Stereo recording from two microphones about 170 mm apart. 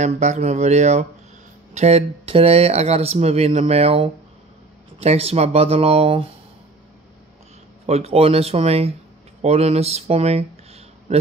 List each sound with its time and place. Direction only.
0.0 s speech: 45° right (ahead or behind)
7.8 s speech: 40° right (ahead or behind)